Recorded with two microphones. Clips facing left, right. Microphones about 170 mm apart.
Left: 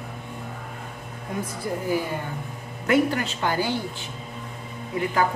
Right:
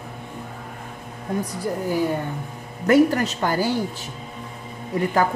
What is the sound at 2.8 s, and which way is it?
Speech, 40° right (ahead or behind).